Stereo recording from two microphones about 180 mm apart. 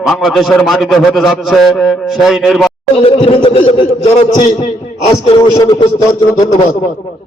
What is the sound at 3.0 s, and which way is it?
A man's voice, 30° left (ahead or behind).